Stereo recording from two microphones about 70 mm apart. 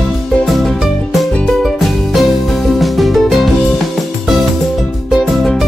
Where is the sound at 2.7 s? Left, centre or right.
Centre.